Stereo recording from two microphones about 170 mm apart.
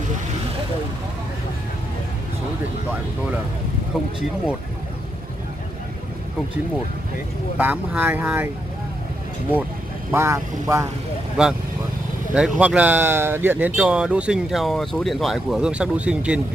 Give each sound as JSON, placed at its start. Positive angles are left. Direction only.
{"t": 7.5, "sound": "speech", "side_deg": -10}
{"t": 10.1, "sound": "speech", "side_deg": -15}
{"t": 11.4, "sound": "speech", "side_deg": -5}